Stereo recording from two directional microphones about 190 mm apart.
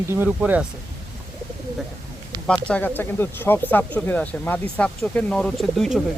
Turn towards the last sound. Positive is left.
turn(degrees=5)  # may be behind; listen again after turning